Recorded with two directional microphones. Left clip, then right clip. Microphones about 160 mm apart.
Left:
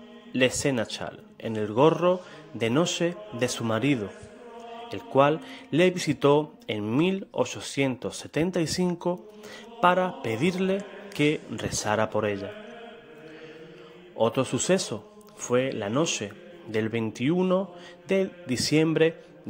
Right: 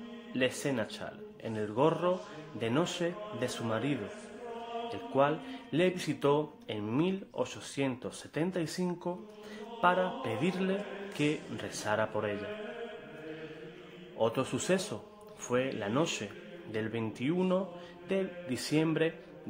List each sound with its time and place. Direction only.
0.3 s a man's voice: 45° left (ahead or behind)
5.1 s a man's voice: 45° left (ahead or behind)
14.1 s a man's voice: 40° left (ahead or behind)
16.7 s a man's voice: 45° left (ahead or behind)